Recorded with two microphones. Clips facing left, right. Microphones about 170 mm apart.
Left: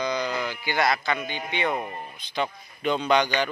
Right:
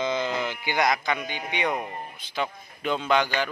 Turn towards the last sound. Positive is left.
turn(degrees=-5)  # may be behind; listen again after turning